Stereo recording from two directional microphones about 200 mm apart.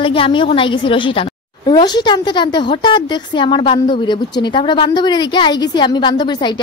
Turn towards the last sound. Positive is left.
turn(degrees=25)  # may be behind; listen again after turning